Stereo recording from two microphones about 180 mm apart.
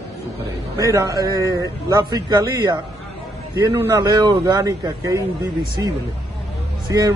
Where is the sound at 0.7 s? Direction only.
20° right (ahead or behind).